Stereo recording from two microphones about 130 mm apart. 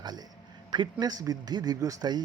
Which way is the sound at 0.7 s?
35° right (ahead or behind).